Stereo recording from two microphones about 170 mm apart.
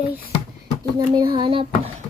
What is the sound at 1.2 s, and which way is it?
Speech, 30° right (ahead or behind).